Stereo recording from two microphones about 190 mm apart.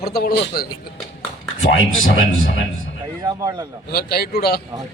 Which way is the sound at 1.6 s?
85° left.